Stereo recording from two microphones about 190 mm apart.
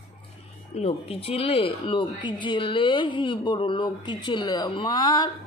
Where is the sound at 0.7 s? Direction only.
30° left (ahead or behind).